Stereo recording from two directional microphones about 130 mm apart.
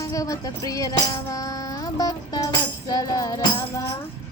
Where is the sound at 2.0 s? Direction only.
30° left (ahead or behind).